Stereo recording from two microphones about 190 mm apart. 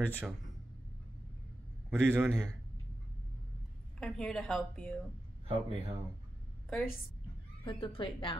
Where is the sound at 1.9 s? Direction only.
10° right (ahead or behind).